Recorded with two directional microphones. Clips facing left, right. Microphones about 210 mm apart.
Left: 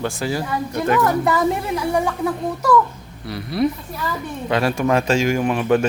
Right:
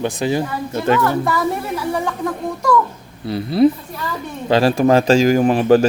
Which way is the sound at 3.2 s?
25° right (ahead or behind).